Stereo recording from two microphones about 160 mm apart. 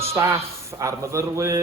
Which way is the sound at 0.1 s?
20° right (ahead or behind).